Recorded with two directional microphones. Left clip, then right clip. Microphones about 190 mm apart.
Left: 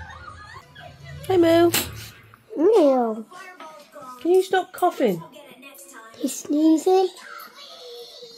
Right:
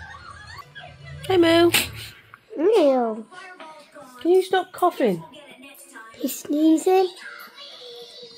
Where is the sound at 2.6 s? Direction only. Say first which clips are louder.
Left 1 dB; 20° left (ahead or behind).